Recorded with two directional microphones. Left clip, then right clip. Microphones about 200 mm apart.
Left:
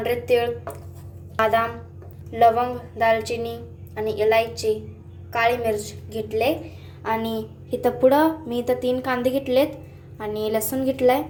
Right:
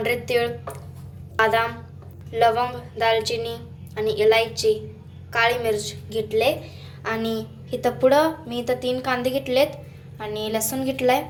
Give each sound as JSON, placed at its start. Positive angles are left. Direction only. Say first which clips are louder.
{"t": 0.0, "sound": "a woman's voice", "louder": "left 1 dB", "side_deg": 15}